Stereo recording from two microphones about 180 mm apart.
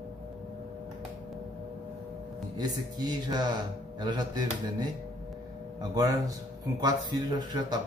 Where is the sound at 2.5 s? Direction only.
25° right (ahead or behind).